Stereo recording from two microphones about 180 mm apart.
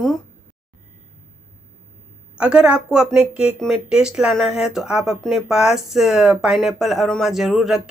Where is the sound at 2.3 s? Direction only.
5° right (ahead or behind).